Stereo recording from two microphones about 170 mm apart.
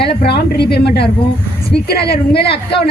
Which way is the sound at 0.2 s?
75° left (ahead or behind).